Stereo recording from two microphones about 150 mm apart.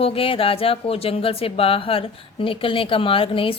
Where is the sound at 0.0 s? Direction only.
40° left (ahead or behind).